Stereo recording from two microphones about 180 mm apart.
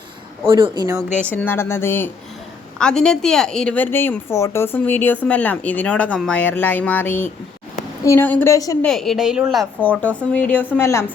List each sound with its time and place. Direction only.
0.4 s speech: 30° right (ahead or behind)
1.3 s a woman's voice: 10° left (ahead or behind)
8.8 s a woman's voice: centre (ahead or behind)